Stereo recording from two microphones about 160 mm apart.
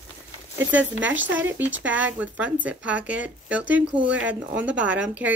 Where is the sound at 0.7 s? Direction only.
10° right (ahead or behind).